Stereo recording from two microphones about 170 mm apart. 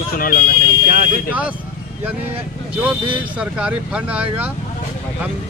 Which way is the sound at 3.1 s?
5° right (ahead or behind).